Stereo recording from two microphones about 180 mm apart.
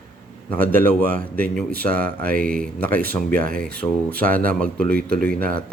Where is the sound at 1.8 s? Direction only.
10° left (ahead or behind).